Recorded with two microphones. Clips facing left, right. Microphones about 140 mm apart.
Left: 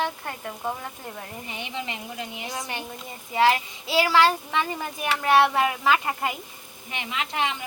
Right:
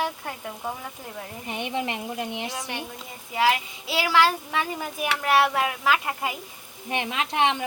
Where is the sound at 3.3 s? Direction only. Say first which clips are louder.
Left 2 dB; centre (ahead or behind).